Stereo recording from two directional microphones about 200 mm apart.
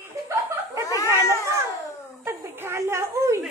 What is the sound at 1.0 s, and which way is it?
Cat, 15° right (ahead or behind).